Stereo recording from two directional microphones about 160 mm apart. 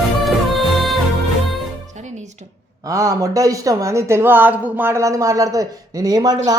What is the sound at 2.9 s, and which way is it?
Speech, 20° right (ahead or behind).